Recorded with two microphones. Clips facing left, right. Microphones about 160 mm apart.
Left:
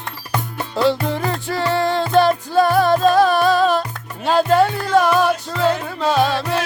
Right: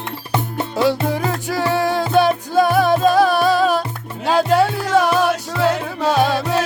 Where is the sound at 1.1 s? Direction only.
10° right (ahead or behind).